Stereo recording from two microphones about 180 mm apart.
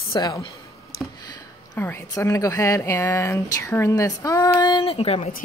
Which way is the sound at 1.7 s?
10° left (ahead or behind).